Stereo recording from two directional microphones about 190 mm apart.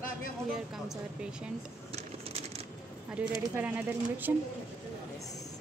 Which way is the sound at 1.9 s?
35° right (ahead or behind).